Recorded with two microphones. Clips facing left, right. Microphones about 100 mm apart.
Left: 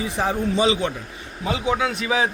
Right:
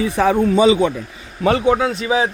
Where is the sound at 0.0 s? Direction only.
85° right.